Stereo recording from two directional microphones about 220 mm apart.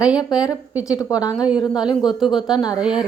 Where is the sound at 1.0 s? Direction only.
15° left (ahead or behind).